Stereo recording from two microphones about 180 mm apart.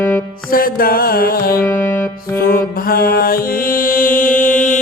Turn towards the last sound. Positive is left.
turn(degrees=45)  # may be behind; listen again after turning